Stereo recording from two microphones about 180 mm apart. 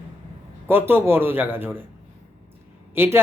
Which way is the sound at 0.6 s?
10° right (ahead or behind).